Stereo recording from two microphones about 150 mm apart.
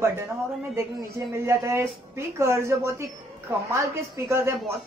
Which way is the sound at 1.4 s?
20° right (ahead or behind).